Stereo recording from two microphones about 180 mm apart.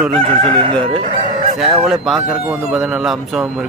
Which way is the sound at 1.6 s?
Centre (ahead or behind).